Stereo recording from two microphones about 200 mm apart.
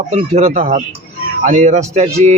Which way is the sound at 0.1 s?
30° right (ahead or behind).